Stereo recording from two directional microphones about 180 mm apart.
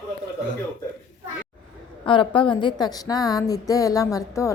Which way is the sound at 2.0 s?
30° left (ahead or behind).